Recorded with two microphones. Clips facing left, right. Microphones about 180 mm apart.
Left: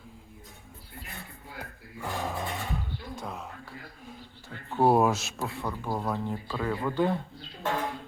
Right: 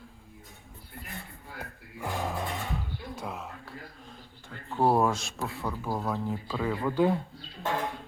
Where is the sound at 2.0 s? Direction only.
5° right (ahead or behind).